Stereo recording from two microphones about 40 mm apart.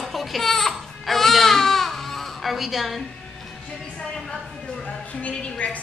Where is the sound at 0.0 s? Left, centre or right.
Centre.